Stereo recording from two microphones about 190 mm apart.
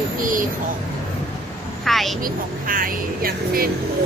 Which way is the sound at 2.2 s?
50° right (ahead or behind).